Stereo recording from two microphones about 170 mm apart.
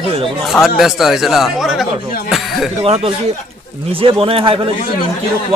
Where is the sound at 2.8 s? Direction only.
35° right (ahead or behind).